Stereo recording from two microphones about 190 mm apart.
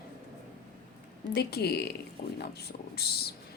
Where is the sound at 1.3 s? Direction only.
60° left (ahead or behind).